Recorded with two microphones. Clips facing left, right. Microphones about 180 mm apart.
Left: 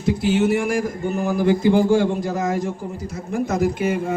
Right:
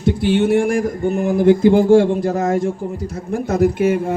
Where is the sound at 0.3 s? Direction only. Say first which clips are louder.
Right 5 dB; 60° right (ahead or behind).